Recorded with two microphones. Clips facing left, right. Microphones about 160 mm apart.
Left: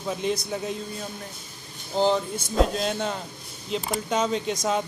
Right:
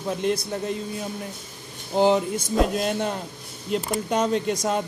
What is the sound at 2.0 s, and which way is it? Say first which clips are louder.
Speech: right 3 dB; 15° right (ahead or behind).